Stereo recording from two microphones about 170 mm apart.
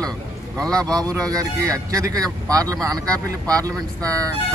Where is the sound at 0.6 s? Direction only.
5° left (ahead or behind).